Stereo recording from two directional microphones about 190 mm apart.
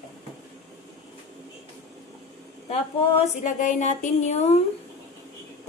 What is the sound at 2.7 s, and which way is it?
Speech, 35° left (ahead or behind).